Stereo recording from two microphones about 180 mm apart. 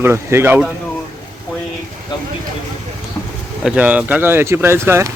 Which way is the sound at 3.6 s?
5° right (ahead or behind).